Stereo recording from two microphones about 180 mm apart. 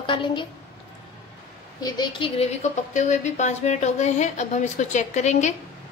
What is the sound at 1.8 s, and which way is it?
Speech, 25° left (ahead or behind).